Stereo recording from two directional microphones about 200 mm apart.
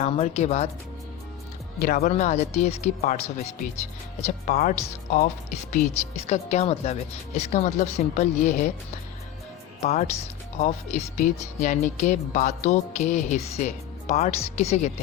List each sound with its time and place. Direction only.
0.0 s speech: 30° left (ahead or behind)
1.8 s speech: 50° left (ahead or behind)
2.0 s speech: 35° left (ahead or behind)
9.8 s speech: 35° left (ahead or behind)